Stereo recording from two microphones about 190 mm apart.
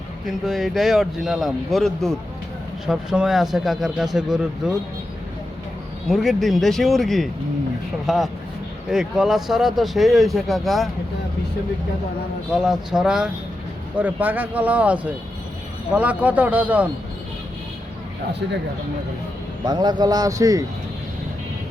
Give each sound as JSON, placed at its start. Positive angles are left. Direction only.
{"t": 0.4, "sound": "speech", "side_deg": 0}
{"t": 6.1, "sound": "speech", "side_deg": 0}
{"t": 12.5, "sound": "speech", "side_deg": -5}
{"t": 19.6, "sound": "a man's voice", "side_deg": -20}